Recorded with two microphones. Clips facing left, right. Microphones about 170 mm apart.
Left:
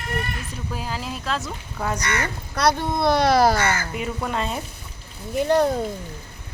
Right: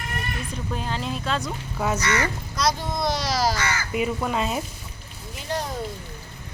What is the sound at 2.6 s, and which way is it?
Speech, 60° left (ahead or behind).